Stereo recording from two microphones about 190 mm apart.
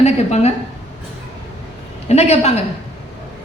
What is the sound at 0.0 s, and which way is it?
Speech, 35° left (ahead or behind).